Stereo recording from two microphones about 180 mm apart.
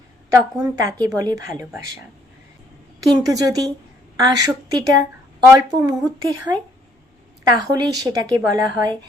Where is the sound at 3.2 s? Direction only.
20° right (ahead or behind).